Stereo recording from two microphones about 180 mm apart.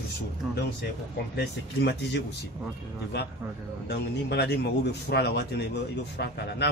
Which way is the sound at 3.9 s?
65° left (ahead or behind).